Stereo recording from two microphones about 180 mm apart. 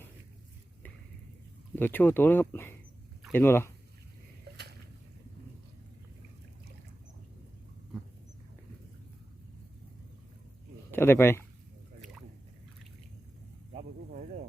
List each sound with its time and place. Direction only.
1.7 s speech: 10° left (ahead or behind)
10.9 s speech: 10° left (ahead or behind)
13.7 s a sound: 40° right (ahead or behind)